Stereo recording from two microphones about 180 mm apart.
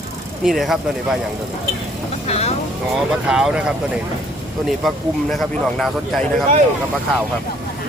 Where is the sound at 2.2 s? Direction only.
35° left (ahead or behind).